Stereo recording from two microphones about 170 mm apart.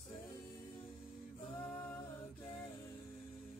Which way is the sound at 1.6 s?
10° left (ahead or behind).